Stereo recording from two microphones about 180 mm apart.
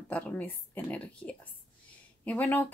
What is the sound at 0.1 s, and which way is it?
Speech, 10° left (ahead or behind).